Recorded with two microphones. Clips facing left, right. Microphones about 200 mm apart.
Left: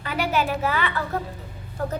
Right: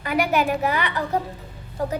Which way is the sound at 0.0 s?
15° right (ahead or behind).